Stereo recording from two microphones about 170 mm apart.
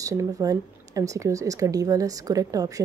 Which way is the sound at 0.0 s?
20° right (ahead or behind).